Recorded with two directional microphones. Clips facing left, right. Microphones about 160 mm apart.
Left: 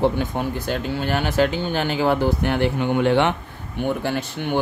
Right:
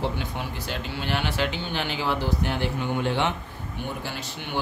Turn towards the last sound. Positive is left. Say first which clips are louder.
# left 10 dB
turn(degrees=60)  # may be behind; listen again after turning